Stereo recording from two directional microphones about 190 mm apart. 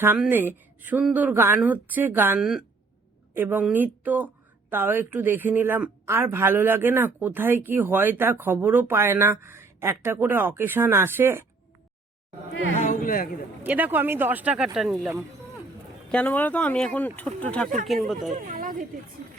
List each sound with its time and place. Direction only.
0.0 s speech: 10° right (ahead or behind)
12.9 s speech: 45° left (ahead or behind)
13.7 s speech: 10° right (ahead or behind)
18.3 s speech: 40° right (ahead or behind)